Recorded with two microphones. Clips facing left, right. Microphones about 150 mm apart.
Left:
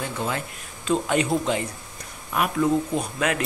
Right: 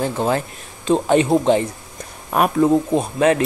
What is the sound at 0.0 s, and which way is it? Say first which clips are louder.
Speech: right 8 dB; 35° right (ahead or behind).